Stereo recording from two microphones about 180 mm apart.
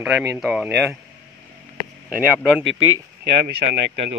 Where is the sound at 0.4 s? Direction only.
5° right (ahead or behind).